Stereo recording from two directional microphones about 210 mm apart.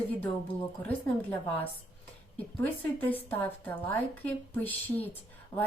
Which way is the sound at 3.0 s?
10° left (ahead or behind).